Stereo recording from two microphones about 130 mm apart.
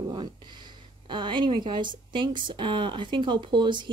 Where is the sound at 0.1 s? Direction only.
35° right (ahead or behind).